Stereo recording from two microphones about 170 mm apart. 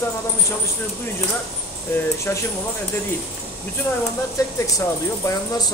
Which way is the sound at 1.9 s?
10° left (ahead or behind).